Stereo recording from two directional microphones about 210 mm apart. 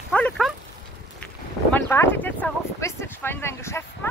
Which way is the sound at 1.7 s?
10° left (ahead or behind).